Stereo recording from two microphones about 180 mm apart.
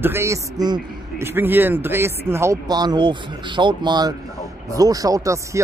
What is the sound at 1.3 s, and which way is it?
Speech, 10° right (ahead or behind).